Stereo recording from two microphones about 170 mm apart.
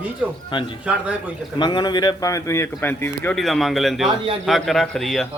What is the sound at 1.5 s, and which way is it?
Speech, 25° left (ahead or behind).